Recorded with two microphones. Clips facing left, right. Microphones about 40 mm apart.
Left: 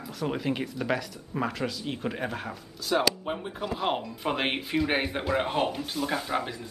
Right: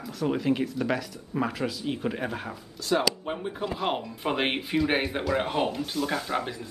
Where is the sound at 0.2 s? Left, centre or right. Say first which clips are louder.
Right 4 dB; centre.